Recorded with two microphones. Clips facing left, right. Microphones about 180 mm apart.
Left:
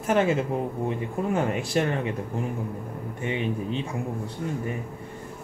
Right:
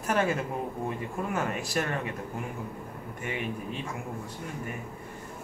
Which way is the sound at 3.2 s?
25° left (ahead or behind).